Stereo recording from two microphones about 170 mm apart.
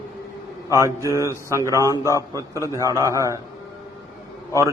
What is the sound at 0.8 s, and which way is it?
A man's voice, 20° right (ahead or behind).